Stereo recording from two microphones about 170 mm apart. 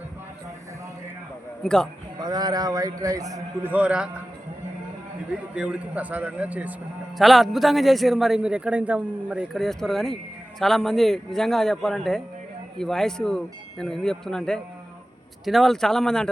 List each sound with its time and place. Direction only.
1.6 s a man's voice: 5° left (ahead or behind)
2.1 s speech: 25° right (ahead or behind); by 4.1 s 5° right (ahead or behind)
5.5 s a man's voice: 10° right (ahead or behind)